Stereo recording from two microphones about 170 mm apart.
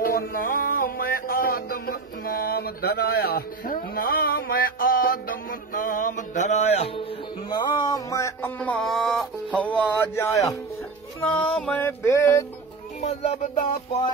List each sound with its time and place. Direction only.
0.0 s music: 60° left (ahead or behind); by 10.6 s 20° left (ahead or behind)
11.1 s music: 10° left (ahead or behind)
13.0 s music: 40° left (ahead or behind)